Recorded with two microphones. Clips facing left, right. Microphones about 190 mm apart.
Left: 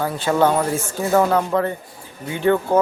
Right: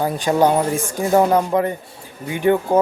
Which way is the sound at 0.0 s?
15° right (ahead or behind).